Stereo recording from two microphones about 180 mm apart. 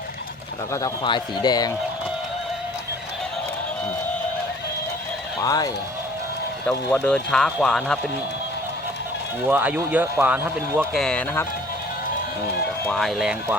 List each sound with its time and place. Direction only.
0.7 s a man's voice: 25° left (ahead or behind)
5.4 s a man's voice: 20° left (ahead or behind)
6.7 s speech: 5° left (ahead or behind)
9.5 s speech: 10° right (ahead or behind)
10.9 s speech: centre (ahead or behind)
12.8 s speech: 5° left (ahead or behind)